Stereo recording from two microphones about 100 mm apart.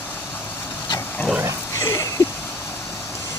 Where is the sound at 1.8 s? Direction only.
35° left (ahead or behind).